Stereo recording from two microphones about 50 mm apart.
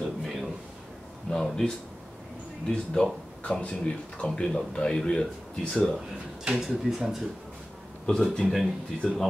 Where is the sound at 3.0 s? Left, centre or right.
Centre.